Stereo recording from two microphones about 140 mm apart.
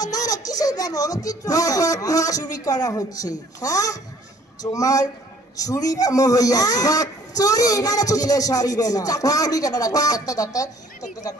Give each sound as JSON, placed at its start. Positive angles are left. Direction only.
{"t": 0.0, "sound": "a man's voice", "side_deg": 25}